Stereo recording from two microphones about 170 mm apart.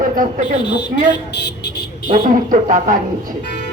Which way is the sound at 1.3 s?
75° left (ahead or behind).